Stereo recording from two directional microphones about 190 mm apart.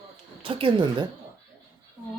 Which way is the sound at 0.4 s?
30° right (ahead or behind).